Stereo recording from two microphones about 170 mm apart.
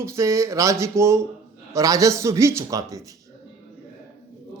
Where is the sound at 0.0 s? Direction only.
15° right (ahead or behind).